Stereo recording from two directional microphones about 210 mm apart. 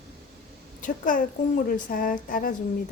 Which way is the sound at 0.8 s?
40° left (ahead or behind).